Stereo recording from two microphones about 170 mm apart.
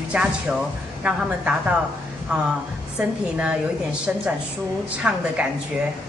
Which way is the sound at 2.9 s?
5° right (ahead or behind).